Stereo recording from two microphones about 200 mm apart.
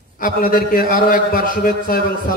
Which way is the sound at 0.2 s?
45° left (ahead or behind).